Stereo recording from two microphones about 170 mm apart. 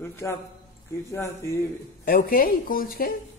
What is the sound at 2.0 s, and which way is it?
A woman's voice, 60° left (ahead or behind).